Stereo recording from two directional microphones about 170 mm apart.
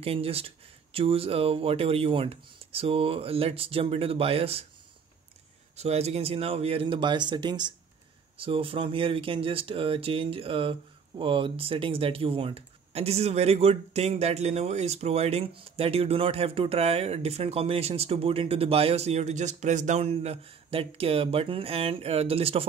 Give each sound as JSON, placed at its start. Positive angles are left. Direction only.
{"t": 0.0, "sound": "speech", "side_deg": -35}
{"t": 5.8, "sound": "speech", "side_deg": -40}